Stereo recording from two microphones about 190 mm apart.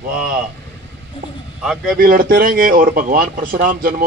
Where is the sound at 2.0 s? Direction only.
50° right (ahead or behind).